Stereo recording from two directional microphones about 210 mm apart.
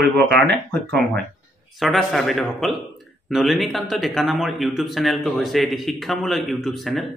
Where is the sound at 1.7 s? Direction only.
Centre (ahead or behind).